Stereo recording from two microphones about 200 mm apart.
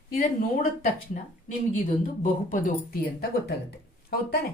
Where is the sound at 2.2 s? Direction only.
40° left (ahead or behind).